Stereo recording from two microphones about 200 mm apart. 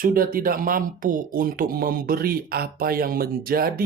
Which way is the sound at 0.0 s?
45° right (ahead or behind).